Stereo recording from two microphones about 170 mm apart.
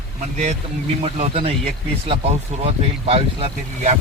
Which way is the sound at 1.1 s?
35° right (ahead or behind).